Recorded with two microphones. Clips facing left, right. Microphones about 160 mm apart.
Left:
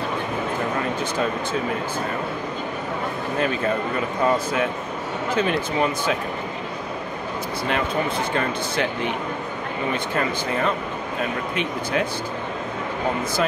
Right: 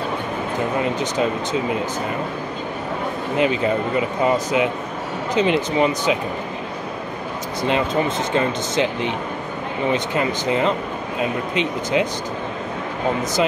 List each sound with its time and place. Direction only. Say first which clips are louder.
3.3 s speech: right 4 dB; 20° right (ahead or behind)
7.6 s speech: right 4 dB; 25° right (ahead or behind)